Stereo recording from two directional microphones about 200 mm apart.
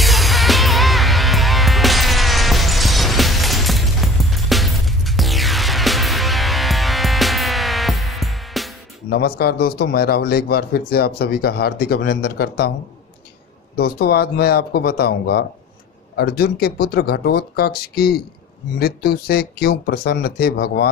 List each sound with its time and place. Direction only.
0.0 s music: centre (ahead or behind)
9.1 s a man's voice: 50° left (ahead or behind)
13.7 s a man's voice: 50° left (ahead or behind)